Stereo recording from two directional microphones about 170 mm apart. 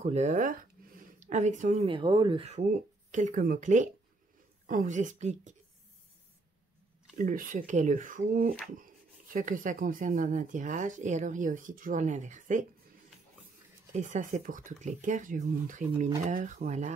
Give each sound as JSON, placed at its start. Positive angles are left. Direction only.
{"t": 0.0, "sound": "speech", "side_deg": -40}
{"t": 1.9, "sound": "speech", "side_deg": -30}
{"t": 7.2, "sound": "speech", "side_deg": -55}
{"t": 13.9, "sound": "speech", "side_deg": -45}